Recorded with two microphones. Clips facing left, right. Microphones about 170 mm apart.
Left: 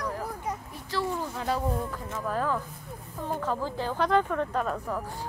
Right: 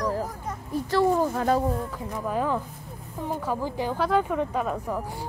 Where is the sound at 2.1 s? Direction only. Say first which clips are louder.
Right 3 dB; 15° right (ahead or behind).